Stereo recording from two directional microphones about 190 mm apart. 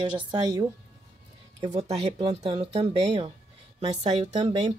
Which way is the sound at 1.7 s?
35° right (ahead or behind).